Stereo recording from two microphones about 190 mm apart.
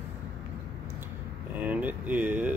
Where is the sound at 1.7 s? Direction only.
10° right (ahead or behind).